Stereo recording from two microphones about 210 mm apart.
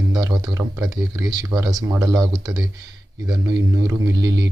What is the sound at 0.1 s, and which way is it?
Speech, 20° right (ahead or behind).